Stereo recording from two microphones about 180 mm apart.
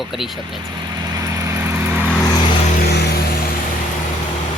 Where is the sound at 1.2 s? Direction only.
15° right (ahead or behind).